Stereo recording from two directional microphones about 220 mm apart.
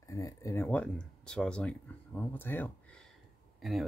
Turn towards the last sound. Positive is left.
turn(degrees=0)  # may be behind; listen again after turning